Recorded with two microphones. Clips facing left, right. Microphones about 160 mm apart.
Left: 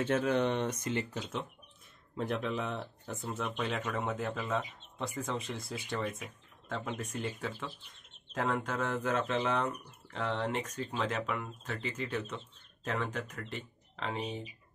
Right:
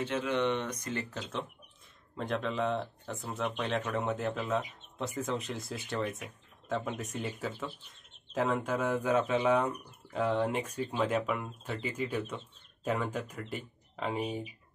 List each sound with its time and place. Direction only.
0.1 s speech: 40° left (ahead or behind)
2.1 s speech: 5° left (ahead or behind)